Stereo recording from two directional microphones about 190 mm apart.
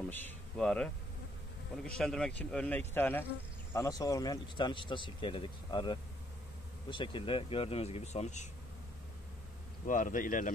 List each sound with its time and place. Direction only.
0.1 s speech: 5° left (ahead or behind); by 8.5 s 35° left (ahead or behind)
9.8 s speech: 45° left (ahead or behind)